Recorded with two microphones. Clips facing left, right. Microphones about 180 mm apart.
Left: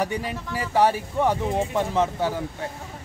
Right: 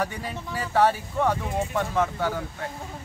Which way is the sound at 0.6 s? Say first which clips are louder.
Left 1 dB; 15° left (ahead or behind).